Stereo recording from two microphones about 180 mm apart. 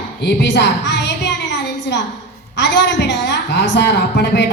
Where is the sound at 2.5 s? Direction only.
75° left (ahead or behind).